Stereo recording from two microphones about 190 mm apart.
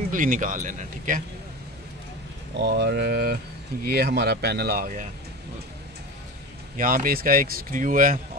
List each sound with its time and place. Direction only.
0.1 s speech: 45° right (ahead or behind)
2.5 s speech: 65° right (ahead or behind)
6.8 s speech: 45° right (ahead or behind)